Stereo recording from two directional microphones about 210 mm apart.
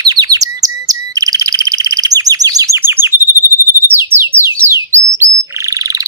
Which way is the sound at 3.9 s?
10° right (ahead or behind).